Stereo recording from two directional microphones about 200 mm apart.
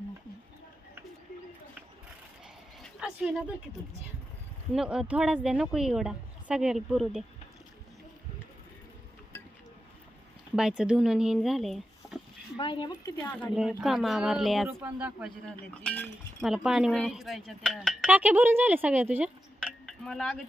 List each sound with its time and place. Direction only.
2.8 s speech: centre (ahead or behind)
4.7 s speech: 5° right (ahead or behind)
10.5 s speech: 5° right (ahead or behind)
12.5 s speech: 25° left (ahead or behind)
13.6 s speech: 5° right (ahead or behind)
15.8 s speech: 10° left (ahead or behind)
16.4 s speech: 5° right (ahead or behind)
19.9 s speech: 5° left (ahead or behind)